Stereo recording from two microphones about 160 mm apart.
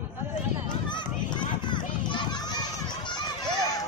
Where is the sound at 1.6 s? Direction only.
30° left (ahead or behind).